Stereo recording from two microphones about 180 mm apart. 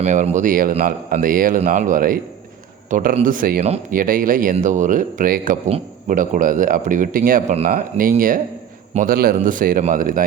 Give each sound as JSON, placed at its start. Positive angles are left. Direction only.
{"t": 0.0, "sound": "speech", "side_deg": -40}